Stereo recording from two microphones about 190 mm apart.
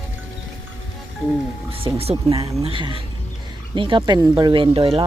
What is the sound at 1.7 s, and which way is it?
Speech, 30° right (ahead or behind).